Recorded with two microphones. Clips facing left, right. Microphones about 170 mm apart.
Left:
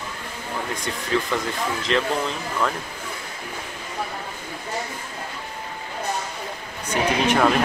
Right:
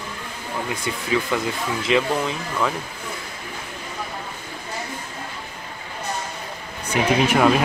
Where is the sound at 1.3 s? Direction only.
5° right (ahead or behind).